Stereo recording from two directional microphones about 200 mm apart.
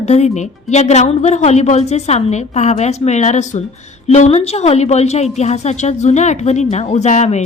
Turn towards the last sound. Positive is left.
turn(degrees=35)  # may be behind; listen again after turning